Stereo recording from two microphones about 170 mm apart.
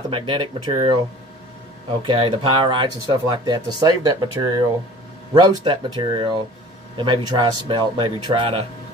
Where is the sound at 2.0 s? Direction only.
30° right (ahead or behind).